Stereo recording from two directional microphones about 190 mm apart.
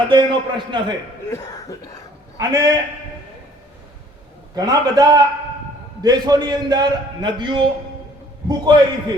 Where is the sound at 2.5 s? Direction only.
20° right (ahead or behind).